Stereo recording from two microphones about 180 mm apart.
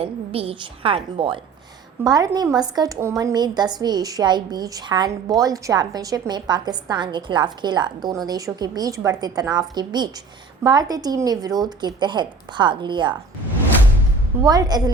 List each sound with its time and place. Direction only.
0.0 s a woman's voice: 30° right (ahead or behind)
14.4 s a woman's voice: 20° right (ahead or behind)